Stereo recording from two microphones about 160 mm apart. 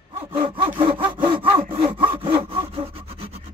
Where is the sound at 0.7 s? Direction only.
35° right (ahead or behind).